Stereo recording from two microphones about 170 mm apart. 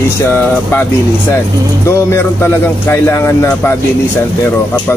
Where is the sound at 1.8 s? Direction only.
15° left (ahead or behind).